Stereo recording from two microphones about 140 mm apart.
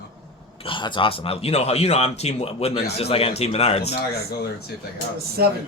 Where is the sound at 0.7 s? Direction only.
35° left (ahead or behind).